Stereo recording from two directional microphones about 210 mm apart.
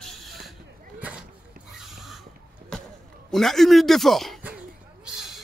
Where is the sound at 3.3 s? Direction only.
Centre (ahead or behind).